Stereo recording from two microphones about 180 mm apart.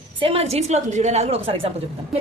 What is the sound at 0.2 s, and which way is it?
A woman's voice, 30° right (ahead or behind).